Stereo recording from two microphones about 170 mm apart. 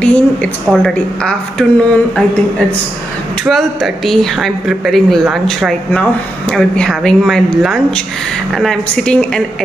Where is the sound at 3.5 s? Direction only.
Centre (ahead or behind).